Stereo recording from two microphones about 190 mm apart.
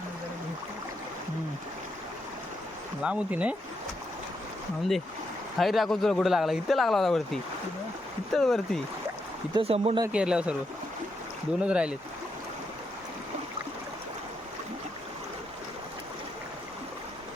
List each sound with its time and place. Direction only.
3.0 s speech: 5° right (ahead or behind)
5.5 s speech: centre (ahead or behind)
8.3 s speech: centre (ahead or behind)
9.6 s speech: 30° right (ahead or behind)
10.1 s speech: 5° right (ahead or behind)
11.6 s speech: 5° right (ahead or behind)